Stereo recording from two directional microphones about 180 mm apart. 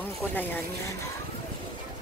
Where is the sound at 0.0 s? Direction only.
10° left (ahead or behind).